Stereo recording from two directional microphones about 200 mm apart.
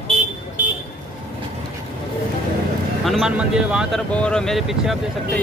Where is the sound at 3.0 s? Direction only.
Centre (ahead or behind).